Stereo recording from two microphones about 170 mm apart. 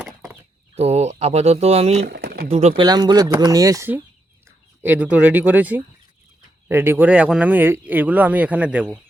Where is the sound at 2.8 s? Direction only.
25° right (ahead or behind).